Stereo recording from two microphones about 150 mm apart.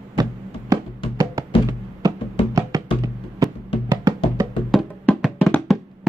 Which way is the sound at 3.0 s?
25° right (ahead or behind).